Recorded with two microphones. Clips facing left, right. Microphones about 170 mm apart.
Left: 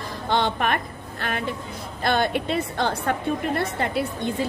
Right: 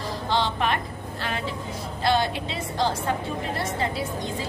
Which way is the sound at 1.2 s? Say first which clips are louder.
Left 3 dB; 55° left (ahead or behind).